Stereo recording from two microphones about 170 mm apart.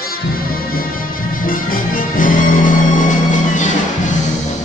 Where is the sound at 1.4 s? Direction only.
55° left (ahead or behind).